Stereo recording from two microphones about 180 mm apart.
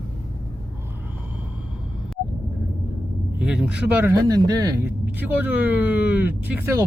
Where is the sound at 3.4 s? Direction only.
5° right (ahead or behind).